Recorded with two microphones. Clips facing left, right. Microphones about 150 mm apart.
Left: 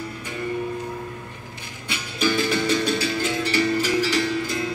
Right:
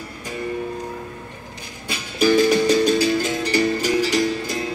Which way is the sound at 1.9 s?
40° right (ahead or behind).